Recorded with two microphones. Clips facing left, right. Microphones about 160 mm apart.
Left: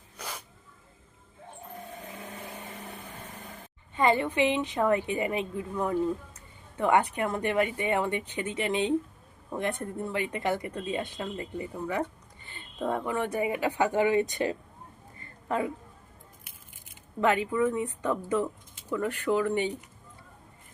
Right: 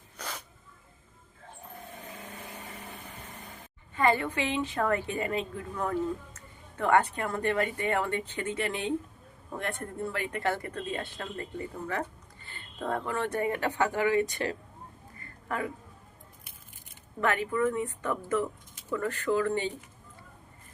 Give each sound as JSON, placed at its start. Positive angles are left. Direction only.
{"t": 3.9, "sound": "a woman's voice", "side_deg": 20}
{"t": 15.2, "sound": "a sound", "side_deg": 20}
{"t": 17.2, "sound": "a woman's voice", "side_deg": 15}